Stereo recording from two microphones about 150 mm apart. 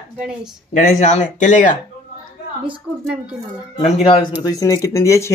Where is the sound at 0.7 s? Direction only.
55° left (ahead or behind).